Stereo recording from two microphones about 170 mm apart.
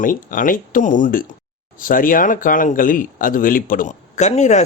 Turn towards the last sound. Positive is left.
turn(degrees=45)  # may be behind; listen again after turning